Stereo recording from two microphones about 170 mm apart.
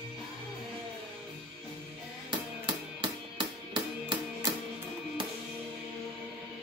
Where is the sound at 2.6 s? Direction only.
30° right (ahead or behind).